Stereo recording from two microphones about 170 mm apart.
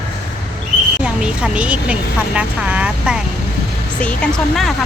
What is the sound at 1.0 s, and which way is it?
A woman's voice, 5° right (ahead or behind).